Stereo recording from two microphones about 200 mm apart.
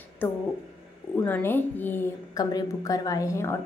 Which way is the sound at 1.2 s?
10° left (ahead or behind).